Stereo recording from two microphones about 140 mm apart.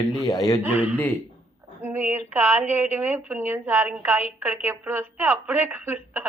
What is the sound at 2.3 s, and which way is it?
A woman's voice, 15° right (ahead or behind).